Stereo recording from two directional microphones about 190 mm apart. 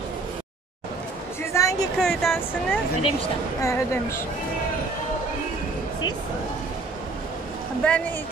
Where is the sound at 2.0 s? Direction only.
Centre (ahead or behind).